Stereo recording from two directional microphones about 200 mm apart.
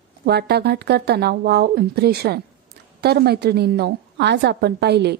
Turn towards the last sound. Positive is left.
turn(degrees=-55)  # may be behind; listen again after turning